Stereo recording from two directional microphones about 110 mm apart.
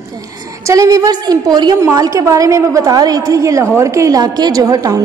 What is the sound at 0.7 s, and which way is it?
A woman's voice, 30° right (ahead or behind).